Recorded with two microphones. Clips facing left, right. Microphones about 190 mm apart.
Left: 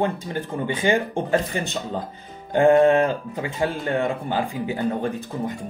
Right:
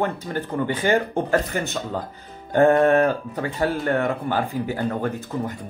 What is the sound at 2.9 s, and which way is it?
Speech, 15° left (ahead or behind).